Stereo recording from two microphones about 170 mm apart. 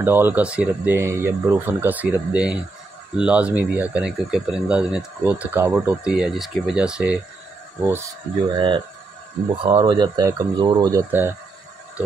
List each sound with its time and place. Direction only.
0.0 s speech: 15° right (ahead or behind)
8.5 s speech: 30° right (ahead or behind)